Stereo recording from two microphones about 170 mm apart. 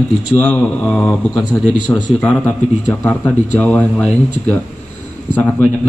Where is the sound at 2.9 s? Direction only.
5° left (ahead or behind).